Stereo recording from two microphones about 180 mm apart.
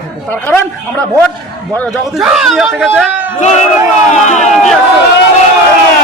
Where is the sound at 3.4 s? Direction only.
40° left (ahead or behind).